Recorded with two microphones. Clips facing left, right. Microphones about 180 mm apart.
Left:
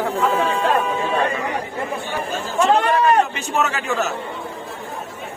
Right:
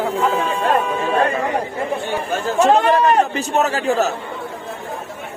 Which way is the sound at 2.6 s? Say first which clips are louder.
Right 2 dB; 40° right (ahead or behind).